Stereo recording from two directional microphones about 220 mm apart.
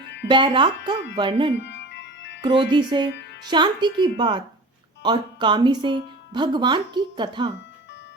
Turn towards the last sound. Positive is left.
turn(degrees=-20)  # may be behind; listen again after turning